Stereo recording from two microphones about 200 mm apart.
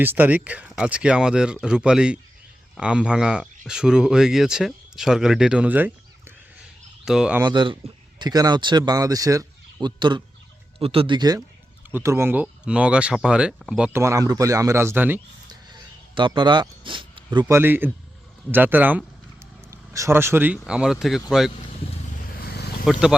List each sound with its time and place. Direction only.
0.0 s speech: 10° right (ahead or behind)
7.4 s speech: 25° right (ahead or behind)
16.1 s speech: 25° right (ahead or behind)
17.5 s speech: 10° right (ahead or behind)
22.4 s a sound: 50° left (ahead or behind)
22.9 s speech: 5° right (ahead or behind)